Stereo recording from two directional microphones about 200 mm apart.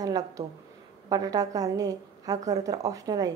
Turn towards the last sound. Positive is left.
turn(degrees=-20)  # may be behind; listen again after turning